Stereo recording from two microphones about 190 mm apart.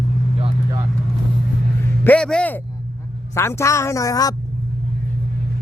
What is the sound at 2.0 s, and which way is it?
Speech, 5° left (ahead or behind).